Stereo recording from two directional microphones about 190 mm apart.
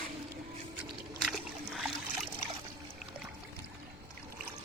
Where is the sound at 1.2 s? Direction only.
Centre (ahead or behind).